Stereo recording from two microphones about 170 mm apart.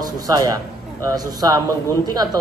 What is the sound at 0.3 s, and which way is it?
A man's voice, 20° right (ahead or behind).